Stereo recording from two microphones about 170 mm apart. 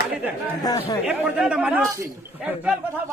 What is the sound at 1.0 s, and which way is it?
Speech, 5° right (ahead or behind).